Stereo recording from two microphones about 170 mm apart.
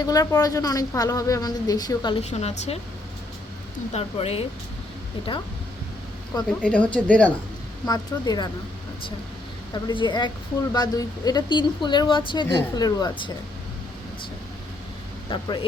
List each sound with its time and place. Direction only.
0.0 s speech: 20° left (ahead or behind)
2.3 s speech: 40° left (ahead or behind)
3.9 s speech: 35° left (ahead or behind)
6.6 s speech: 5° left (ahead or behind)
7.9 s speech: 20° left (ahead or behind)
9.7 s speech: 25° left (ahead or behind)